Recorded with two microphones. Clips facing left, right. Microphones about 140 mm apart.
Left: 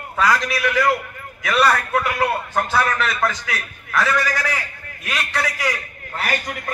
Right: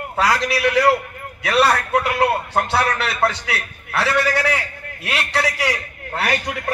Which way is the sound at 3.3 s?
70° right (ahead or behind).